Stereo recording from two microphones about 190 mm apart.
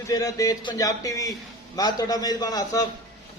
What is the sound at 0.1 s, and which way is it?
A man's voice, 20° left (ahead or behind).